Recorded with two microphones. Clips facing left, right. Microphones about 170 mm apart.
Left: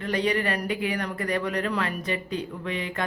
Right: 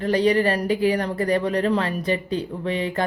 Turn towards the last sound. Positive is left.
turn(degrees=-30)  # may be behind; listen again after turning